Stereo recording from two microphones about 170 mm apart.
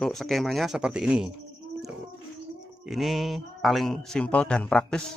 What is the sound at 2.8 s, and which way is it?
Speech, centre (ahead or behind).